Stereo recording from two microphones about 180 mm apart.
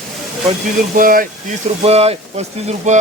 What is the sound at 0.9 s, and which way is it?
Speech, 50° right (ahead or behind).